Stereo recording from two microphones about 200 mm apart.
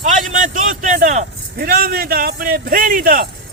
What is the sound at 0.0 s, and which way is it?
A man's voice, 40° right (ahead or behind).